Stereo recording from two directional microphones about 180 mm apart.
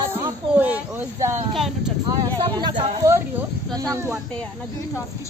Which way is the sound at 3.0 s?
15° right (ahead or behind).